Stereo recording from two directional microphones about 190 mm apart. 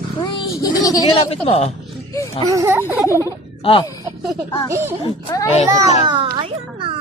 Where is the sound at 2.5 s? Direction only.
15° right (ahead or behind).